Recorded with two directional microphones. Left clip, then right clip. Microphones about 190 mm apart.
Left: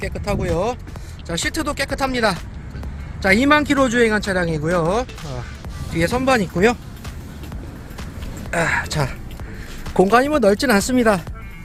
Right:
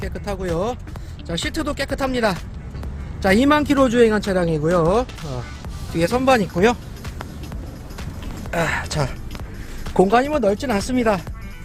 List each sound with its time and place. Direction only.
0.0 s speech: centre (ahead or behind)
8.4 s speech: centre (ahead or behind)
10.2 s speech: 30° left (ahead or behind)